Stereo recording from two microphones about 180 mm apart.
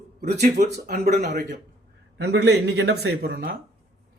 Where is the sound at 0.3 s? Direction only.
65° right (ahead or behind).